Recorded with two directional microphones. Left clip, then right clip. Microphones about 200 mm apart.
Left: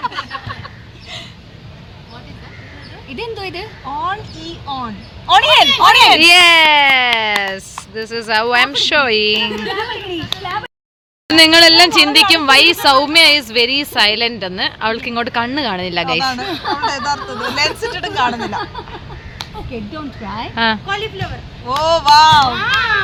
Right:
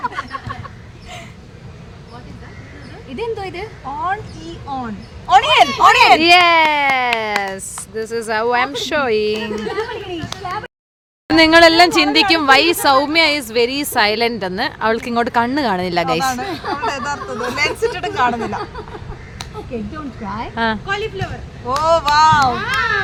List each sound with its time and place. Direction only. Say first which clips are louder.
0.0 s a sound: left 1 dB; 25° right (ahead or behind)
3.2 s speech: right 1 dB; 15° right (ahead or behind)
9.6 s chatter: left 2 dB; 15° right (ahead or behind)
11.3 s speech: left 2 dB; 15° right (ahead or behind)
16.5 s speech: left 3 dB; 10° right (ahead or behind)
16.8 s speech: left 3 dB; 25° right (ahead or behind)
17.2 s speech: left 1 dB; 10° right (ahead or behind)
17.9 s speech: even; 25° right (ahead or behind)
20.2 s speech: left 3 dB; 10° right (ahead or behind)
20.8 s speech: even; centre (ahead or behind)
21.8 s speech: left 3 dB; 20° right (ahead or behind)